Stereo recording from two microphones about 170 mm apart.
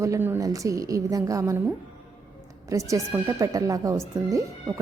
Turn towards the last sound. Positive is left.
turn(degrees=-20)  # may be behind; listen again after turning